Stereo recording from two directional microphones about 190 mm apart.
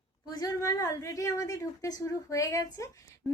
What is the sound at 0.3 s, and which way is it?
A woman's voice, 20° left (ahead or behind).